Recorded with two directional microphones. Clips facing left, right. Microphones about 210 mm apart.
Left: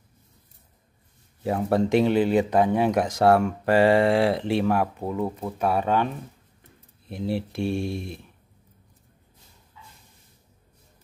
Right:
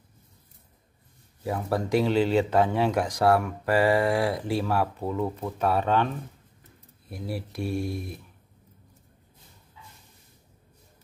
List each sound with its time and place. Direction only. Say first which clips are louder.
1.4 s speech: left 5 dB; 25° left (ahead or behind)
7.1 s speech: left 6 dB; 25° left (ahead or behind)